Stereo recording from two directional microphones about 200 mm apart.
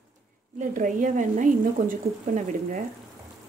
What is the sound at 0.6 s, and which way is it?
A woman's voice, 40° right (ahead or behind).